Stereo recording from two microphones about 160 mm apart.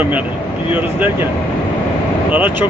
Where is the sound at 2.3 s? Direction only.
10° right (ahead or behind).